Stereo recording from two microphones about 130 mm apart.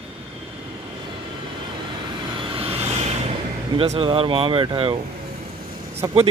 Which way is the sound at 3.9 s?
40° right (ahead or behind).